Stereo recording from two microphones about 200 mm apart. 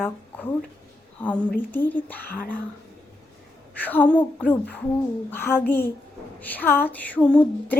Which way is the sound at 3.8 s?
10° left (ahead or behind).